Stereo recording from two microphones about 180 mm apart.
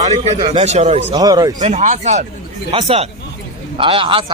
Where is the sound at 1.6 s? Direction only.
40° right (ahead or behind).